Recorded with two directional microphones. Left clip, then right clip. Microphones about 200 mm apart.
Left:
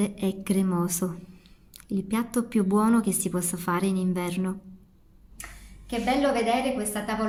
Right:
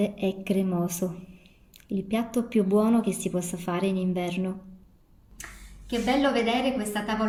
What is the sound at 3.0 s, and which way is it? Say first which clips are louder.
A woman's voice: even; 20° left (ahead or behind).